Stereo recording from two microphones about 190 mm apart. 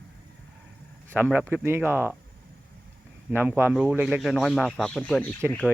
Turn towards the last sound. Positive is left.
turn(degrees=5)  # may be behind; listen again after turning